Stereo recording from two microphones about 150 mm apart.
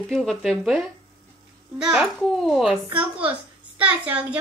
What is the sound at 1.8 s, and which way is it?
A woman's voice, 5° right (ahead or behind).